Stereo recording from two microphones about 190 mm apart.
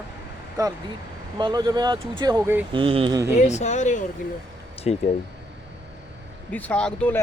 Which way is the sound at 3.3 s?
35° left (ahead or behind).